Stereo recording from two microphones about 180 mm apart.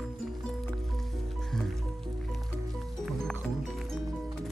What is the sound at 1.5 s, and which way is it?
Music, centre (ahead or behind).